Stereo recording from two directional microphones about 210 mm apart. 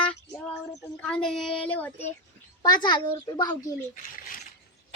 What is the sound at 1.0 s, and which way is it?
Child singing, 5° left (ahead or behind).